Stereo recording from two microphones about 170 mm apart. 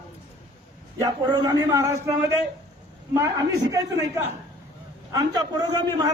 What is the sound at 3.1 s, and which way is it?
A man's voice, 20° right (ahead or behind).